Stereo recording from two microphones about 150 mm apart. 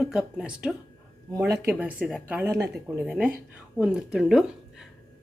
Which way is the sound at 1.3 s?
20° right (ahead or behind).